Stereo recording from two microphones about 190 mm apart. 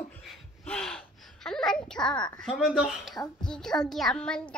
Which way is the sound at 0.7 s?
5° left (ahead or behind).